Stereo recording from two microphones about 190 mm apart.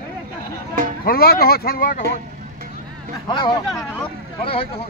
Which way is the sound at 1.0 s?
50° left (ahead or behind).